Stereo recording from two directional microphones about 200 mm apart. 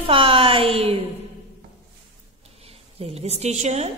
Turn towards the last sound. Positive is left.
turn(degrees=-35)  # may be behind; listen again after turning